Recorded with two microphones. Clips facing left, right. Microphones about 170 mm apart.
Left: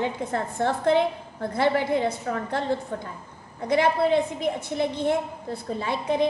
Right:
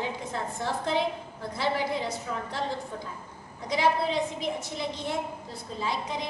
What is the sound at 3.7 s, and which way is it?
A woman's voice, 55° left (ahead or behind).